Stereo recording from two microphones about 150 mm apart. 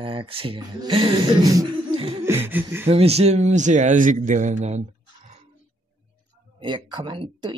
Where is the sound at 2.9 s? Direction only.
40° right (ahead or behind).